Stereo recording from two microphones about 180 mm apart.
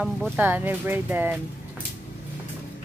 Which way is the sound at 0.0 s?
5° right (ahead or behind).